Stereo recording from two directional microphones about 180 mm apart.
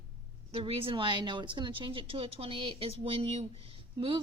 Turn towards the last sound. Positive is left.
turn(degrees=-30)  # may be behind; listen again after turning